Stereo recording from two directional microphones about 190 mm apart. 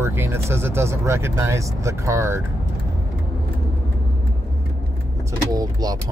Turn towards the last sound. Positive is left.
turn(degrees=-20)  # may be behind; listen again after turning